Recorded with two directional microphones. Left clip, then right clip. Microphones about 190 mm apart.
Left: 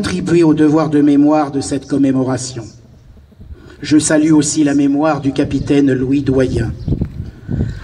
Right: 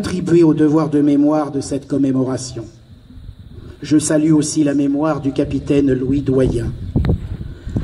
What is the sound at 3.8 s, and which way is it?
A man's voice, 50° right (ahead or behind).